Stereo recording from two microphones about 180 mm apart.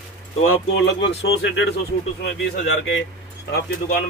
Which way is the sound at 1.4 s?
90° left.